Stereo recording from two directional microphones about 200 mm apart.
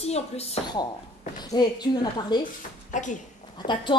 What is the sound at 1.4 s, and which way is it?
A woman's voice, 20° left (ahead or behind).